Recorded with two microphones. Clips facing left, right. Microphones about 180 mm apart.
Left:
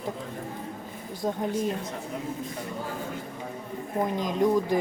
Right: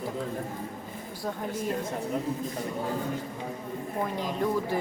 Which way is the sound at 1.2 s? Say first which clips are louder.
Left 5 dB; 20° left (ahead or behind).